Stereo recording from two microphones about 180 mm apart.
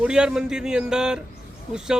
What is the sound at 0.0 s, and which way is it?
Speech, 5° right (ahead or behind).